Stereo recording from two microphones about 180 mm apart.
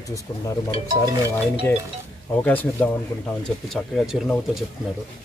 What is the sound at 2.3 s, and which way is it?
Speech, 10° left (ahead or behind).